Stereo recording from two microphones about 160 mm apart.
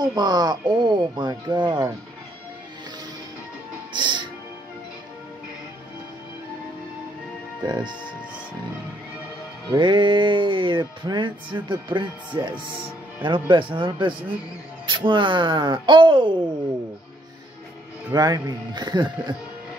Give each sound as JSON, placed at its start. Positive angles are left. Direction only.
{"t": 0.0, "sound": "speech", "side_deg": -25}
{"t": 3.9, "sound": "music", "side_deg": -30}
{"t": 7.6, "sound": "music", "side_deg": -25}
{"t": 9.7, "sound": "music", "side_deg": -30}
{"t": 13.2, "sound": "speech", "side_deg": -30}
{"t": 18.1, "sound": "music", "side_deg": -25}